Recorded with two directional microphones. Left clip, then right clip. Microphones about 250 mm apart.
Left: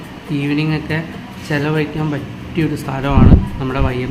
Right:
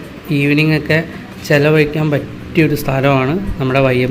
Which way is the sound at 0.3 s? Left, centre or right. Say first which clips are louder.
Right 6 dB; centre.